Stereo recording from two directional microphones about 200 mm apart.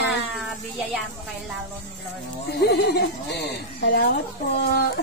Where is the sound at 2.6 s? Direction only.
55° left (ahead or behind).